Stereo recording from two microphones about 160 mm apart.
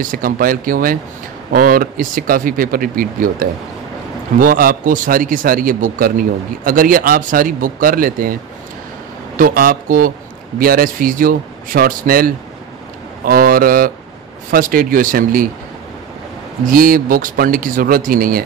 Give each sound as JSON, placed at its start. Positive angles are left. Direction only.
{"t": 0.0, "sound": "a man's voice", "side_deg": -60}
{"t": 9.4, "sound": "a man's voice", "side_deg": -60}
{"t": 16.6, "sound": "a man's voice", "side_deg": -60}